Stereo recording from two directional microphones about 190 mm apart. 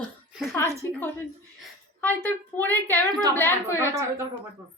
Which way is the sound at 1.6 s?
10° left (ahead or behind).